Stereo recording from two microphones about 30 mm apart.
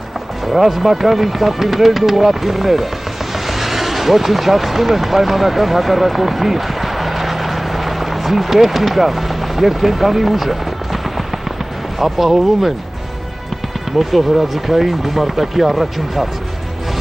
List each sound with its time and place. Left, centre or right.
0.5 s speech: centre
12.0 s speech: centre
13.9 s speech: centre